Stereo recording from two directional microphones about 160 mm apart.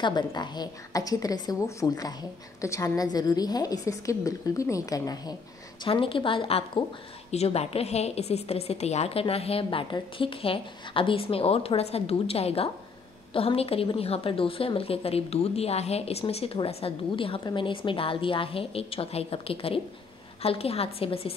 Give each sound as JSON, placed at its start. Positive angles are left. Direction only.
{"t": 0.0, "sound": "a woman's voice", "side_deg": 25}
{"t": 5.9, "sound": "a woman's voice", "side_deg": 35}